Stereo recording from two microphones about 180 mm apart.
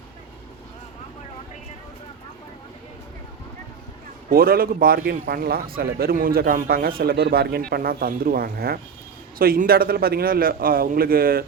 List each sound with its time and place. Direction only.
4.3 s a man's voice: 55° right (ahead or behind)